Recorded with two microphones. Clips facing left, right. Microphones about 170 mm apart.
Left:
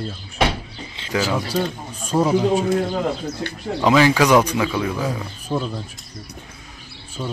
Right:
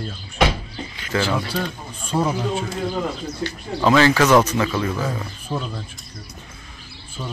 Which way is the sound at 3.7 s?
15° left (ahead or behind).